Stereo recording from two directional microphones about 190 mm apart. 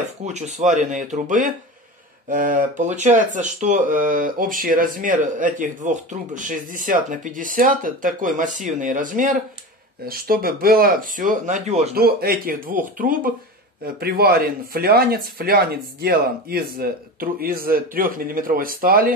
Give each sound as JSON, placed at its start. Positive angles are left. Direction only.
{"t": 0.2, "sound": "speech", "side_deg": -40}
{"t": 11.9, "sound": "speech", "side_deg": -55}